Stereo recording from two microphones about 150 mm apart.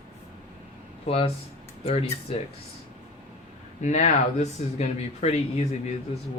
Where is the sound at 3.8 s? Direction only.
50° left (ahead or behind).